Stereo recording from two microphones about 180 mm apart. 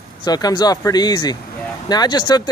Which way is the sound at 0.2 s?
20° left (ahead or behind).